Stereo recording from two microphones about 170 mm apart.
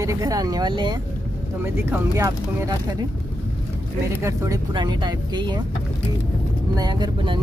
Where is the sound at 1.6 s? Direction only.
15° right (ahead or behind).